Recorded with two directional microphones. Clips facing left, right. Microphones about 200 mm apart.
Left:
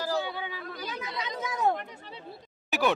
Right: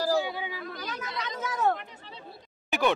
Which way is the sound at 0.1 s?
10° right (ahead or behind).